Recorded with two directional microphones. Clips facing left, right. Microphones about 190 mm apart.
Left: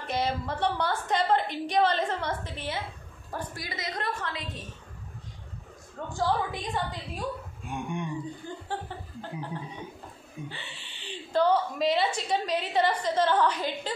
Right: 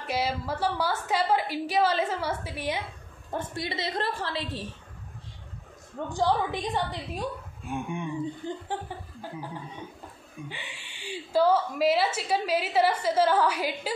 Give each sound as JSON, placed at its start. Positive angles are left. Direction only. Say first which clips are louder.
{"t": 0.0, "sound": "a woman's voice", "louder": "even", "side_deg": -5}
{"t": 3.3, "sound": "a woman's voice", "louder": "right 4 dB", "side_deg": -25}
{"t": 6.0, "sound": "a woman's voice", "louder": "right 2 dB", "side_deg": -20}
{"t": 7.6, "sound": "a woman's voice", "louder": "right 1 dB", "side_deg": 0}
{"t": 8.5, "sound": "a woman's voice", "louder": "right 2 dB", "side_deg": -15}
{"t": 10.5, "sound": "a woman's voice", "louder": "right 1 dB", "side_deg": -15}